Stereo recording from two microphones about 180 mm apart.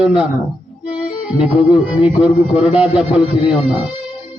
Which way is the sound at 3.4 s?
30° left (ahead or behind).